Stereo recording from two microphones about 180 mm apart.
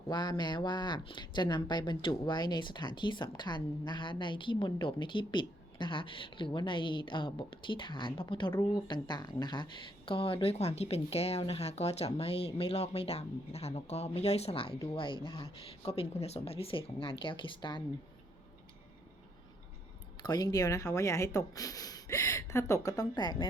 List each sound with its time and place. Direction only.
0.1 s speech: 25° left (ahead or behind)
20.2 s speech: 20° left (ahead or behind)